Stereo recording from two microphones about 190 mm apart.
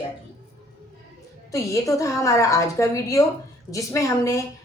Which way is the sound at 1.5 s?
15° left (ahead or behind).